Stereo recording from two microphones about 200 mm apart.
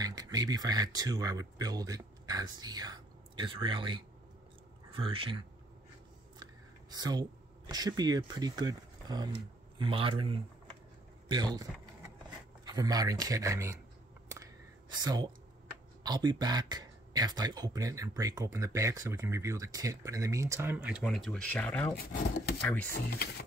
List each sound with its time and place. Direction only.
0.0 s speech: 20° right (ahead or behind)
6.4 s whispering: 20° right (ahead or behind)
7.7 s speech: 20° right (ahead or behind)
12.6 s speech: 20° right (ahead or behind)
14.3 s a sound: 15° right (ahead or behind)
16.0 s speech: 20° right (ahead or behind); by 22.8 s 5° left (ahead or behind)
22.8 s speech: 50° left (ahead or behind)